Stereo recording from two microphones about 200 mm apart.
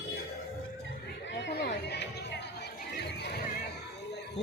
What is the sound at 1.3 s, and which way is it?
Music, 55° left (ahead or behind).